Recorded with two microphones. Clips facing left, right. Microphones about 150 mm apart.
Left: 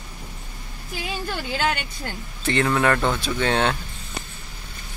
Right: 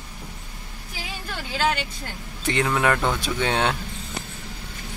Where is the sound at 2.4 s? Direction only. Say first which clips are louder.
Left 2 dB; 15° right (ahead or behind).